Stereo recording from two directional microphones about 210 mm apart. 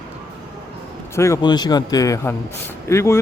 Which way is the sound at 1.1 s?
15° left (ahead or behind).